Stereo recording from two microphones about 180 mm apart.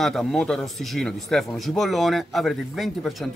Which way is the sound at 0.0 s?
Centre (ahead or behind).